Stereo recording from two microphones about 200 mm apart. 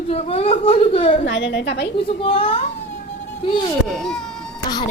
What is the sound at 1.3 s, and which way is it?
Speech, 65° left (ahead or behind).